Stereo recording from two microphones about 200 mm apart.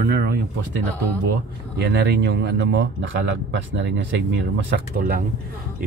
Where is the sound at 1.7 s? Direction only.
55° right (ahead or behind).